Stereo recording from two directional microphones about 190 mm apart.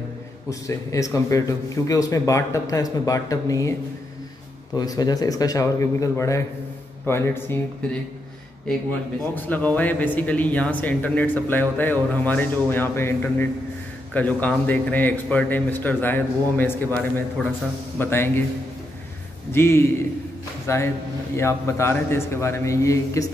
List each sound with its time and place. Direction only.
0.5 s speech: 15° left (ahead or behind)
4.7 s a man's voice: 20° left (ahead or behind)
9.3 s speech: 10° left (ahead or behind)
19.5 s a man's voice: 15° left (ahead or behind)